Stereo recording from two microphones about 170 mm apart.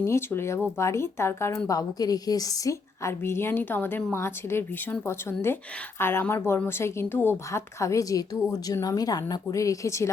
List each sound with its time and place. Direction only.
0.0 s a woman's voice: 15° left (ahead or behind)